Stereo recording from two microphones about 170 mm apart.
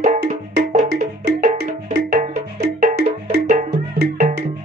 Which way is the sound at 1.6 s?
60° right (ahead or behind).